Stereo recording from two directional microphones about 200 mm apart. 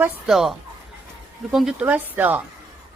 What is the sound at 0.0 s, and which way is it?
Speech, centre (ahead or behind).